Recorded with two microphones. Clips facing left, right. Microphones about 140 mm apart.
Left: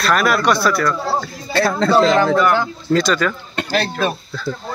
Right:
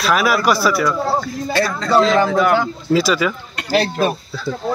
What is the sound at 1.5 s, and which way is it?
Speech, 30° left (ahead or behind).